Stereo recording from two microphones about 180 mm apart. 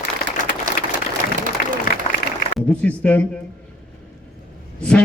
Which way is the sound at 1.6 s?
55° left (ahead or behind).